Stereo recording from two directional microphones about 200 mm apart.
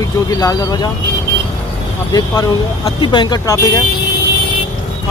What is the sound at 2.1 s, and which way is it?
Speech, 20° left (ahead or behind).